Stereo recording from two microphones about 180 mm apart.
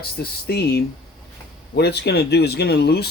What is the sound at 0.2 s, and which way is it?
Speech, 65° left (ahead or behind).